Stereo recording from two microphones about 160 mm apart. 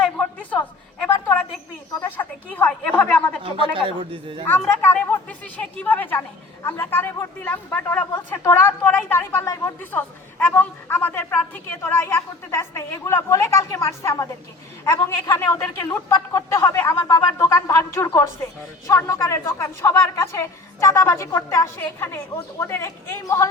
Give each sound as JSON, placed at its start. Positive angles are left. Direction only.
{"t": 0.0, "sound": "a sound", "side_deg": 10}
{"t": 2.0, "sound": "a woman's voice", "side_deg": 10}
{"t": 3.8, "sound": "a man's voice", "side_deg": -35}
{"t": 4.4, "sound": "a woman's voice", "side_deg": 10}